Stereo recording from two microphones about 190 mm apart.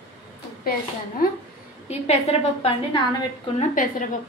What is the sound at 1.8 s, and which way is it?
Speech, 35° left (ahead or behind).